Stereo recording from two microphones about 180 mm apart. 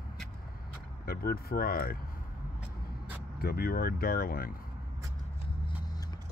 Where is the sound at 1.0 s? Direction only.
55° left (ahead or behind).